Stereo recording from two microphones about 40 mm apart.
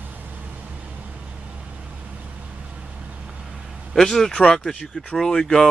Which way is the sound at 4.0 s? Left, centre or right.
Centre.